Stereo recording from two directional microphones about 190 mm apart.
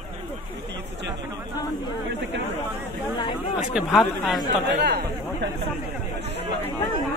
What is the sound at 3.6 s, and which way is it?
Speech, 5° right (ahead or behind).